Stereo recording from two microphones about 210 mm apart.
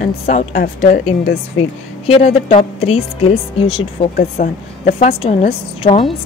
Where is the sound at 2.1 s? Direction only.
30° left (ahead or behind).